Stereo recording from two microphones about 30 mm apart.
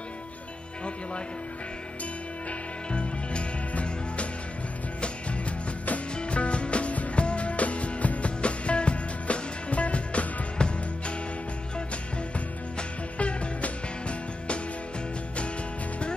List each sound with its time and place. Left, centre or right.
2.9 s music: left
6.1 s music: left
10.6 s music: left
12.7 s music: left